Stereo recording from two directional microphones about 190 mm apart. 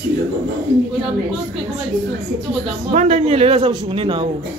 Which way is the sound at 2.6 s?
35° right (ahead or behind).